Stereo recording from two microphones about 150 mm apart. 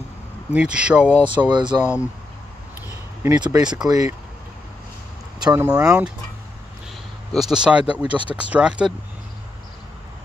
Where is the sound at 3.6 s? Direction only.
5° right (ahead or behind).